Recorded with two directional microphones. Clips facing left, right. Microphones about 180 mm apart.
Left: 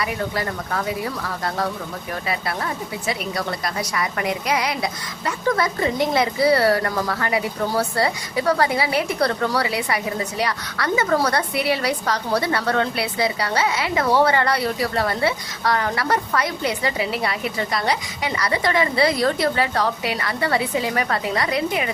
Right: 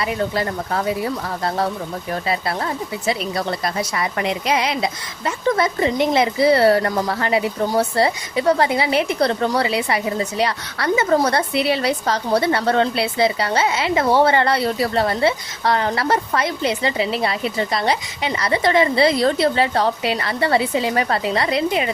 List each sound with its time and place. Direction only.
0.0 s a woman's voice: 25° right (ahead or behind)